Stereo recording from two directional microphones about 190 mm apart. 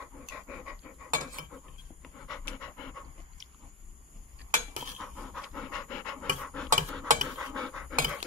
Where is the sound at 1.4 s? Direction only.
45° right (ahead or behind).